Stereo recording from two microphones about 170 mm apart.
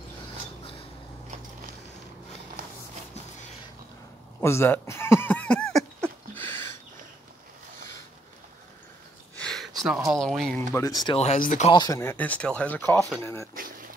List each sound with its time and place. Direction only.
4.4 s speech: 15° left (ahead or behind)
6.3 s a sound: 15° left (ahead or behind)
9.4 s a sound: 5° left (ahead or behind)
9.8 s speech: 5° right (ahead or behind)
10.7 s speech: 20° left (ahead or behind)
11.1 s speech: 45° left (ahead or behind)
11.7 s speech: 20° left (ahead or behind)